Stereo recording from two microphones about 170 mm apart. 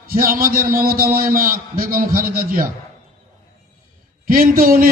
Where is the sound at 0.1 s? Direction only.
60° right (ahead or behind).